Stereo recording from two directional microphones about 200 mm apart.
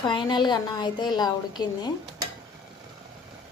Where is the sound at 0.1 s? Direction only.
20° left (ahead or behind).